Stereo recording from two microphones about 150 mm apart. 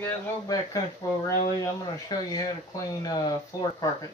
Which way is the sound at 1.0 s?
20° left (ahead or behind).